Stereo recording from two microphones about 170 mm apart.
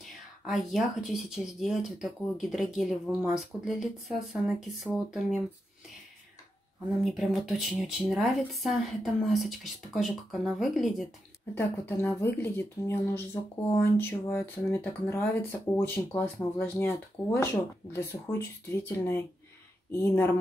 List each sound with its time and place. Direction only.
0.0 s speech: centre (ahead or behind)
7.0 s speech: centre (ahead or behind)
11.5 s speech: 15° left (ahead or behind)